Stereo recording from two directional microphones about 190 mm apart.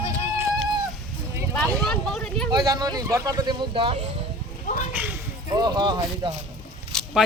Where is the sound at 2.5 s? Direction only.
20° right (ahead or behind).